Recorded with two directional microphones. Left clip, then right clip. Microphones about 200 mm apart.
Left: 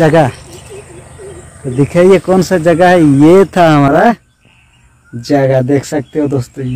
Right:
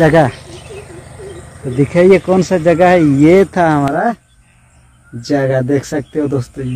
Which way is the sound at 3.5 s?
50° left (ahead or behind).